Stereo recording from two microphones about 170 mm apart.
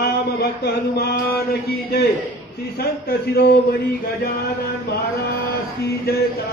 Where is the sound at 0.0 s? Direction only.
65° left (ahead or behind).